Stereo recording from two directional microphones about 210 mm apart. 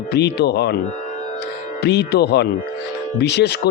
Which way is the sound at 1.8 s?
50° left (ahead or behind).